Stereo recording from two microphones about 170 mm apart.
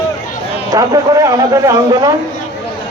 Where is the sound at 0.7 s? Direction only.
20° right (ahead or behind).